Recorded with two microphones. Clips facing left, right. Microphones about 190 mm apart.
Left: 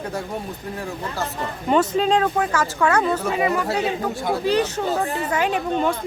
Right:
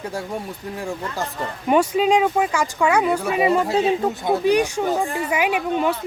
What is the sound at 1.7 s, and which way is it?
Speech, 10° right (ahead or behind).